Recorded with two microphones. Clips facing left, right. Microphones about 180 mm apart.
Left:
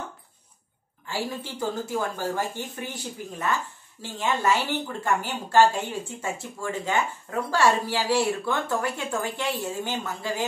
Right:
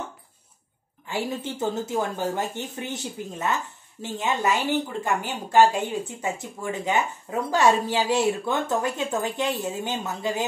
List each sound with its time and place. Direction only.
1.0 s speech: 20° right (ahead or behind)